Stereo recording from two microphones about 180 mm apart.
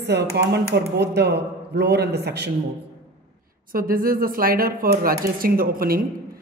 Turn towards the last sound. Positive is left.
turn(degrees=-55)  # may be behind; listen again after turning